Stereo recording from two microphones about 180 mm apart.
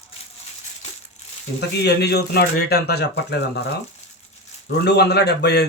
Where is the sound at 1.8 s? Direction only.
65° left (ahead or behind).